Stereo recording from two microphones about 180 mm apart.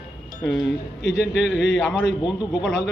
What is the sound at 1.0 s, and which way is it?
Speech, 75° left (ahead or behind).